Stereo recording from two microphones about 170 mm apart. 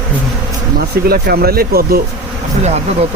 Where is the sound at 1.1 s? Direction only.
65° right (ahead or behind).